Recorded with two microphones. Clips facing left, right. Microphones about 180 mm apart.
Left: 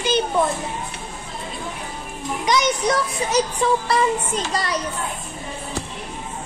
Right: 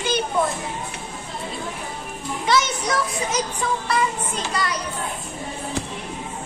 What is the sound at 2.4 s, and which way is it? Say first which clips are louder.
Speech: left 1 dB; 15° left (ahead or behind).